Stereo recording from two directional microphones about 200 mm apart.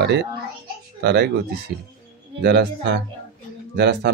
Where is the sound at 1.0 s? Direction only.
55° right (ahead or behind).